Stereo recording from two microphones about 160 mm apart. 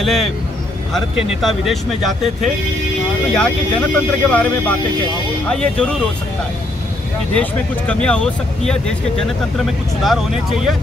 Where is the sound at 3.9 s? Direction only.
10° left (ahead or behind).